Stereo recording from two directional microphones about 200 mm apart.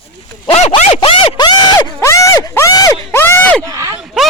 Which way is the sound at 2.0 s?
15° left (ahead or behind).